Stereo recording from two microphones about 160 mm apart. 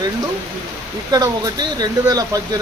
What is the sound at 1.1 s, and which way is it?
Speech, 25° right (ahead or behind).